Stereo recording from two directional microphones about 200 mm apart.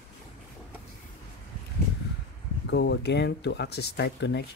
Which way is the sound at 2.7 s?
60° left (ahead or behind).